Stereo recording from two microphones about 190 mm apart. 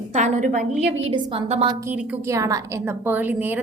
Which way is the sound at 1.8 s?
15° right (ahead or behind).